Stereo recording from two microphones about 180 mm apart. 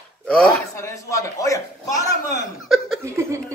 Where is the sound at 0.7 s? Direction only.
15° left (ahead or behind).